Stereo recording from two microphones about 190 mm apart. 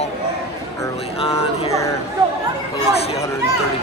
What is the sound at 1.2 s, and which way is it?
Speech, 30° left (ahead or behind).